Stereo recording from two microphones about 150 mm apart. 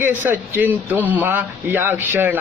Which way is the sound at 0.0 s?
15° right (ahead or behind).